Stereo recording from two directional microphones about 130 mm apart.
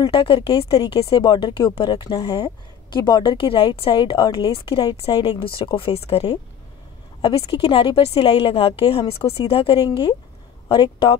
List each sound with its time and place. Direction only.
0.1 s a woman's voice: 45° left (ahead or behind)